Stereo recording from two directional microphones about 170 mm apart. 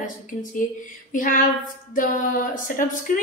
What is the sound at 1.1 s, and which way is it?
A woman's voice, 55° left (ahead or behind).